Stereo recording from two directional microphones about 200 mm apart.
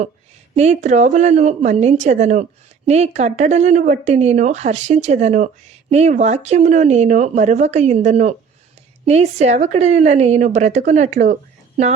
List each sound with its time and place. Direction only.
0.5 s a woman's voice: 35° right (ahead or behind)